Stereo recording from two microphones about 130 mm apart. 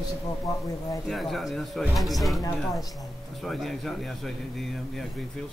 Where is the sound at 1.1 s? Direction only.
Centre (ahead or behind).